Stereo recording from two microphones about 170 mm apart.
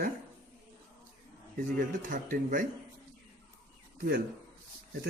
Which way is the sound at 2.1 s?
50° right (ahead or behind).